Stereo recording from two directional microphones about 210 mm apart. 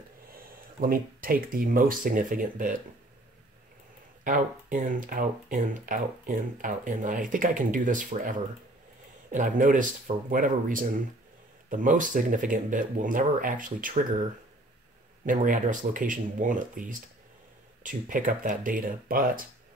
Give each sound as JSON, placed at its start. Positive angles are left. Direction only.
{"t": 0.7, "sound": "speech", "side_deg": -40}
{"t": 4.2, "sound": "speech", "side_deg": -40}
{"t": 15.2, "sound": "speech", "side_deg": -40}